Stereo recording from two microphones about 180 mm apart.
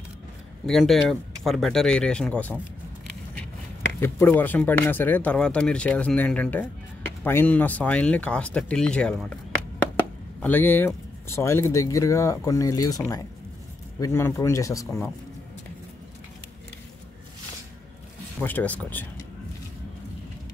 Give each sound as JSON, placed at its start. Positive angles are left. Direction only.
{"t": 0.7, "sound": "speech", "side_deg": 0}
{"t": 4.0, "sound": "speech", "side_deg": 10}
{"t": 10.4, "sound": "speech", "side_deg": 10}
{"t": 18.4, "sound": "speech", "side_deg": 10}